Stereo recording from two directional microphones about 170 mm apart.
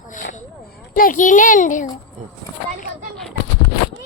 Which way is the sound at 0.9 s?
55° left (ahead or behind).